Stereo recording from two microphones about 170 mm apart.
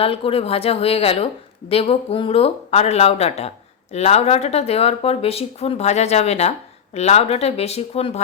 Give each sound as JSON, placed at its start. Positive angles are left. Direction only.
{"t": 0.0, "sound": "speech", "side_deg": 35}